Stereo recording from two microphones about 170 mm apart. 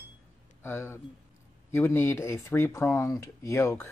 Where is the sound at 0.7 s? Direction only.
15° left (ahead or behind).